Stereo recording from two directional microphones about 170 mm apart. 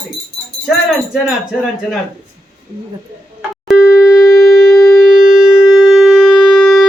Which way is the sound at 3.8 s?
15° left (ahead or behind).